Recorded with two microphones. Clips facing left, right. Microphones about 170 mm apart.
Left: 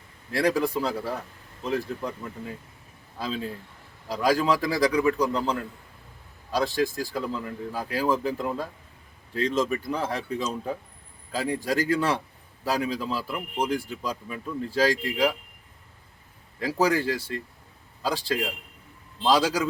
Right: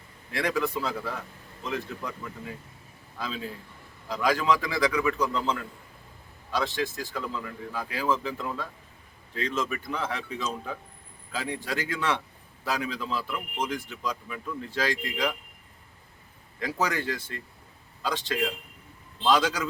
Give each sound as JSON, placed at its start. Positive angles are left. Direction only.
{"t": 0.3, "sound": "a man's voice", "side_deg": 35}
{"t": 6.5, "sound": "a man's voice", "side_deg": 35}
{"t": 16.8, "sound": "a man's voice", "side_deg": 30}